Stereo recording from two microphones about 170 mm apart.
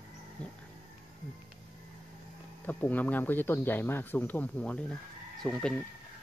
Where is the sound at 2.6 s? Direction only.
10° left (ahead or behind).